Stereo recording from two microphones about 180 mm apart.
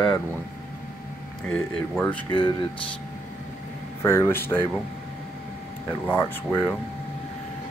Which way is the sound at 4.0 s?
15° left (ahead or behind).